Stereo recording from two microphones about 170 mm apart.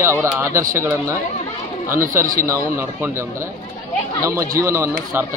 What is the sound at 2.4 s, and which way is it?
A man's voice, 15° right (ahead or behind).